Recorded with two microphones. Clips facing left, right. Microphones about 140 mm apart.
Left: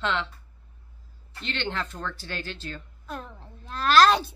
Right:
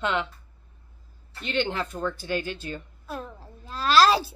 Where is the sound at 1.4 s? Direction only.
10° right (ahead or behind).